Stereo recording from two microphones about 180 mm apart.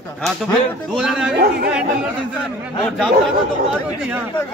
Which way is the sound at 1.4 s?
65° right (ahead or behind).